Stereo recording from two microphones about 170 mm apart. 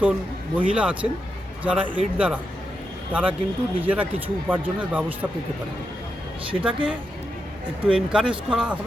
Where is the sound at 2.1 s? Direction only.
5° right (ahead or behind).